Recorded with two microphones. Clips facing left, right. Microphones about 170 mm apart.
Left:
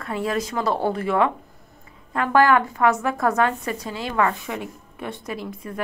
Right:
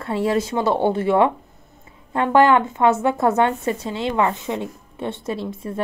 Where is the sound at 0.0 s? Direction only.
30° right (ahead or behind).